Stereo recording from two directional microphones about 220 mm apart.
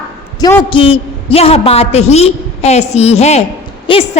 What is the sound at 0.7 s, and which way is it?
A man's voice, 25° left (ahead or behind).